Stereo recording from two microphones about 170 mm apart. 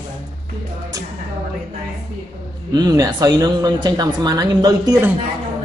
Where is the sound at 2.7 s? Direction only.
20° right (ahead or behind).